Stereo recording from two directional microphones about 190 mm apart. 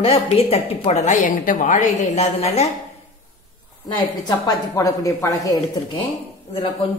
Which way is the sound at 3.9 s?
20° left (ahead or behind).